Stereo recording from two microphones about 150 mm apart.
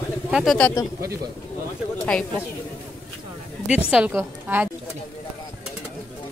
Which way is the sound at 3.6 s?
10° right (ahead or behind).